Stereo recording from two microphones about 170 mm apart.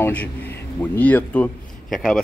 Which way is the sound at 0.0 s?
10° left (ahead or behind).